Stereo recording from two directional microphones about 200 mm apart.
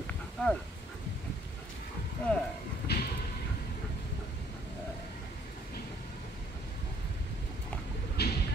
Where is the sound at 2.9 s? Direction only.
55° left (ahead or behind).